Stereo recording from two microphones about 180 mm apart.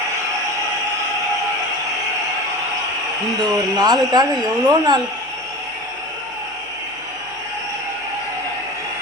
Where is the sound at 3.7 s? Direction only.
20° right (ahead or behind).